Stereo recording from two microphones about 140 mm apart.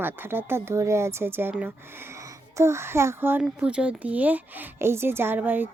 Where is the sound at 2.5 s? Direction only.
20° right (ahead or behind).